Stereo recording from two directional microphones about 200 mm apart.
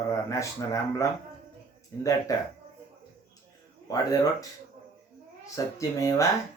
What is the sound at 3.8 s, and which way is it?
Speech, 20° left (ahead or behind).